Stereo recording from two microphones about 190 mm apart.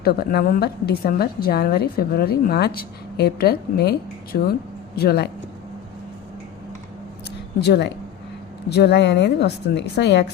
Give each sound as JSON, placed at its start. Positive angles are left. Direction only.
{"t": 0.0, "sound": "a woman's voice", "side_deg": 50}
{"t": 7.6, "sound": "a woman's voice", "side_deg": 60}